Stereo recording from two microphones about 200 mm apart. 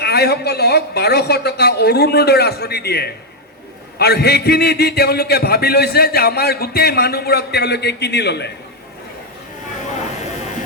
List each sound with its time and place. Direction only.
0.0 s a man's voice: 55° left (ahead or behind)